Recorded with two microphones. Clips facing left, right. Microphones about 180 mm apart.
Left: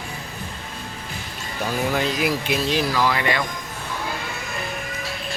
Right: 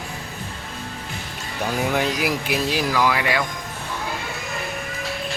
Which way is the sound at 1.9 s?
15° right (ahead or behind).